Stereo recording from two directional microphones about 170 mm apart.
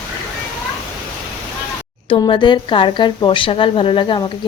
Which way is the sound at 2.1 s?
30° left (ahead or behind).